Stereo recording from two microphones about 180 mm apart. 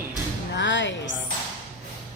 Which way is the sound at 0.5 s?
90° left.